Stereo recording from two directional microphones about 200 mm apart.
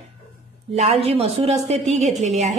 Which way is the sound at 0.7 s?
30° right (ahead or behind).